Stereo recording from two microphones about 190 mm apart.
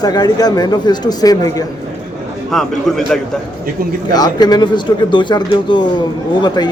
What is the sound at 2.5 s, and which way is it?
Speech, centre (ahead or behind).